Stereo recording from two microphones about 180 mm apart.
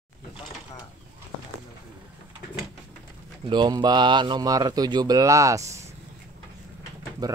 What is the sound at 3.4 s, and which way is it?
Speech, 25° right (ahead or behind).